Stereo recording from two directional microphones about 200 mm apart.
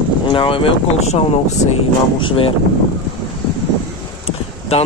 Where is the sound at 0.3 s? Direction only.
25° left (ahead or behind).